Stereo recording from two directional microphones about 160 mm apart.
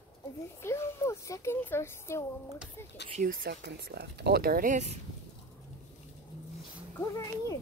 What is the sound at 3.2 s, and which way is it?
Speech, 60° right (ahead or behind).